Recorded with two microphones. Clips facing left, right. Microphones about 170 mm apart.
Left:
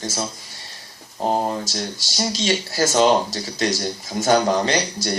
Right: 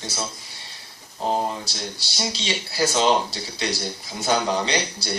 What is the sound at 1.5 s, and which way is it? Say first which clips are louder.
Speech: left 5 dB; 45° left (ahead or behind).